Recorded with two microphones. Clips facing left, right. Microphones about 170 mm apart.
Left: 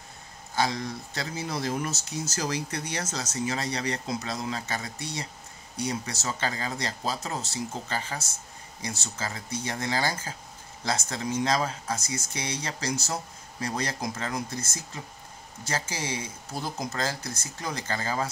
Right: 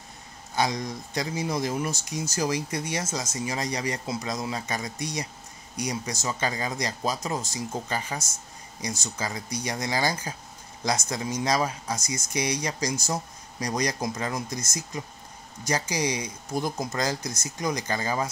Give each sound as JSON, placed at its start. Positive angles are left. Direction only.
{"t": 0.6, "sound": "speech", "side_deg": -15}